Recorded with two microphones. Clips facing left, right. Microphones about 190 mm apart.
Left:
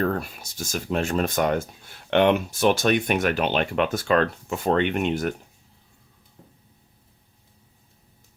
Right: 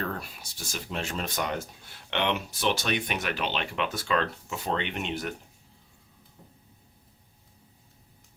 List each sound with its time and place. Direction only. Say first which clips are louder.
0.0 s speech: left 9 dB; 50° left (ahead or behind)